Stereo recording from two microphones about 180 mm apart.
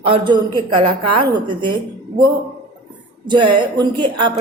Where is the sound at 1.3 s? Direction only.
25° right (ahead or behind).